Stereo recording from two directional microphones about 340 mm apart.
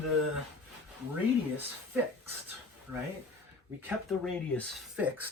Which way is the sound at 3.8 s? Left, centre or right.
Centre.